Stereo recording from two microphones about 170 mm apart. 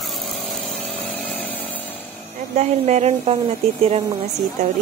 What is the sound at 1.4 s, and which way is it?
Chainsaw, 10° left (ahead or behind).